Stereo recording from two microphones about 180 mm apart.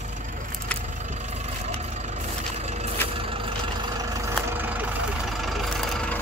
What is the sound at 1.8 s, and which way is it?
Vehicle, 40° right (ahead or behind).